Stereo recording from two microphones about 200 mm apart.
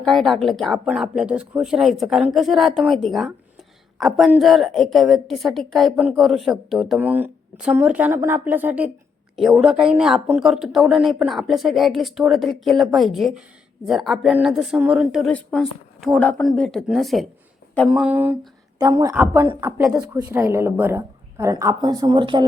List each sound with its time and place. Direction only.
0.0 s a woman's voice: centre (ahead or behind); by 22.4 s 25° right (ahead or behind)